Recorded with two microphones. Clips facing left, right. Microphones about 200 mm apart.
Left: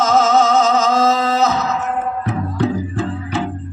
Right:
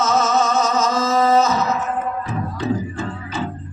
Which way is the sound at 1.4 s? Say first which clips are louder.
Left 2 dB; 65° left (ahead or behind).